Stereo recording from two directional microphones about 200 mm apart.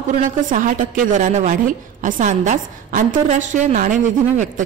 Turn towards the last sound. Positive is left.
turn(degrees=-40)  # may be behind; listen again after turning